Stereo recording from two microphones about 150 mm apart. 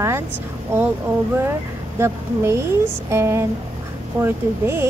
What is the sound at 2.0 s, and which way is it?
Speech, 15° right (ahead or behind).